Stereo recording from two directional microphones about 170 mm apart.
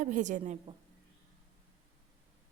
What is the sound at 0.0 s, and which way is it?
Speech, 45° right (ahead or behind).